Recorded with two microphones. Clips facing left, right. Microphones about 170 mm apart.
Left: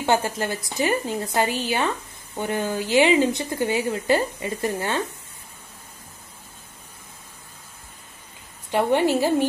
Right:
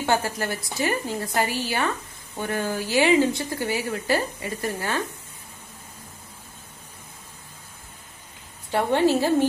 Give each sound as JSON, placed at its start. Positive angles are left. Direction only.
{"t": 0.0, "sound": "a woman's voice", "side_deg": 20}
{"t": 8.7, "sound": "a woman's voice", "side_deg": 15}